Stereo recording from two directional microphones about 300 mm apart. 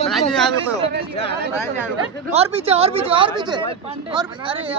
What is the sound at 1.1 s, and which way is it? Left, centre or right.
Speech, centre.